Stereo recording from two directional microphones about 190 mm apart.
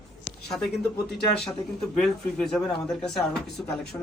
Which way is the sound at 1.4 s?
5° left (ahead or behind).